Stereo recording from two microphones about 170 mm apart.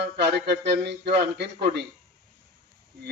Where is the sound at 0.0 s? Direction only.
80° right.